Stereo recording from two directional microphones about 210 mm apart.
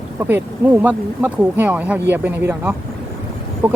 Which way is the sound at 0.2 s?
10° right (ahead or behind).